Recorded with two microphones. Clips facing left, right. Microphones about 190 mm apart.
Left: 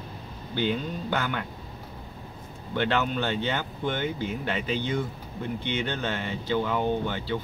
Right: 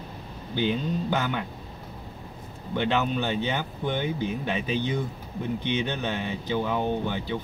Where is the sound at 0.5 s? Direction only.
15° right (ahead or behind).